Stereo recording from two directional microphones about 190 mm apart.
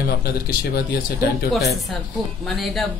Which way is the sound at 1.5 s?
Centre (ahead or behind).